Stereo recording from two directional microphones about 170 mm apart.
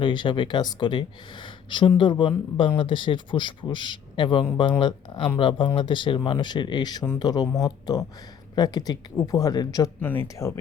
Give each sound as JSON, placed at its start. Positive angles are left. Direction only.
{"t": 0.0, "sound": "speech", "side_deg": 25}